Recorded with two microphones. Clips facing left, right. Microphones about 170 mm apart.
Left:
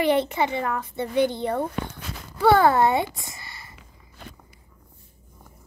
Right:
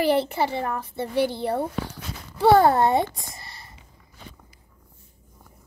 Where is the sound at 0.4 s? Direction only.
30° right (ahead or behind).